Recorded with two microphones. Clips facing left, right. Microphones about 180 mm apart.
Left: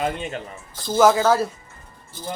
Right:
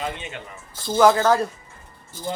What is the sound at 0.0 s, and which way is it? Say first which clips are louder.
Speech: left 5 dB; 40° left (ahead or behind).